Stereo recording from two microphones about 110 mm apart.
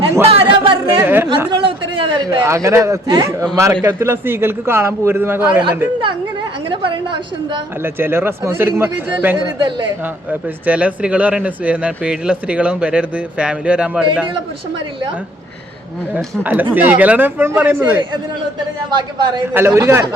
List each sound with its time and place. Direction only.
0.3 s a sound: 55° right (ahead or behind)
1.0 s a man's voice: 20° right (ahead or behind)
1.5 s a sound: 50° right (ahead or behind)
2.4 s a man's voice: 25° right (ahead or behind)
6.7 s a woman's voice: 50° right (ahead or behind)
7.9 s a man's voice: 20° right (ahead or behind)
9.4 s a woman's voice: 45° right (ahead or behind)
10.7 s speech: 10° right (ahead or behind)
16.1 s speech: 15° right (ahead or behind)
19.5 s a man's voice: 25° right (ahead or behind)